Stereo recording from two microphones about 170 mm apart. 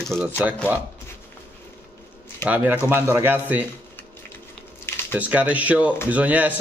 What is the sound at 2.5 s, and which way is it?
Speech, 10° right (ahead or behind).